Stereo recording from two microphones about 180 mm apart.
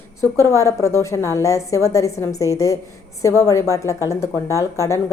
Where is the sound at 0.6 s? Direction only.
15° left (ahead or behind).